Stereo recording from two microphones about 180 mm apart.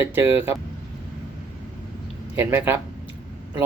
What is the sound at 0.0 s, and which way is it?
Speech, 15° right (ahead or behind).